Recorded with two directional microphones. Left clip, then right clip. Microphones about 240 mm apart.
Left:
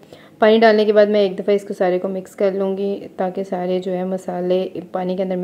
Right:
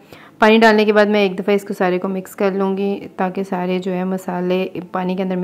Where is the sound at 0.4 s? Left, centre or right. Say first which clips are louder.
Right 1 dB; right.